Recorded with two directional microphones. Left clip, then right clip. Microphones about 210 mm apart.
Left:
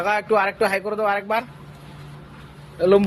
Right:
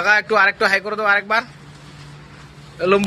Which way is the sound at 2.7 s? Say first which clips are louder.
Even; 20° left (ahead or behind).